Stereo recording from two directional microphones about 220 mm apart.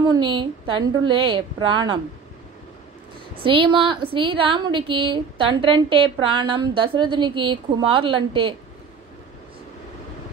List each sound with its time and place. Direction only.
0.0 s a woman's voice: 20° right (ahead or behind)
3.4 s a woman's voice: 20° right (ahead or behind)